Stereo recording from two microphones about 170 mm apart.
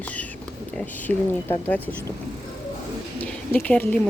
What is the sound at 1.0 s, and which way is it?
Speech, 10° left (ahead or behind).